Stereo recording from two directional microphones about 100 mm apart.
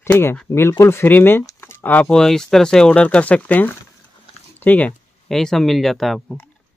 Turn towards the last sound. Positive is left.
turn(degrees=0)  # may be behind; listen again after turning